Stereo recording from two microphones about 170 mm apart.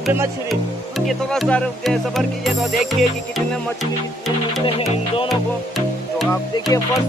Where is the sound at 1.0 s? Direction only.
Centre (ahead or behind).